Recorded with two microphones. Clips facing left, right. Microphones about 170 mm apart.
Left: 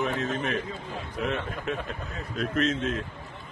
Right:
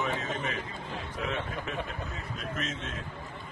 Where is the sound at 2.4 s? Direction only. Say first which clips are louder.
Left 11 dB; 75° left (ahead or behind).